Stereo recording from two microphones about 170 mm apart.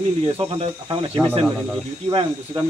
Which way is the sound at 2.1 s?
30° right (ahead or behind).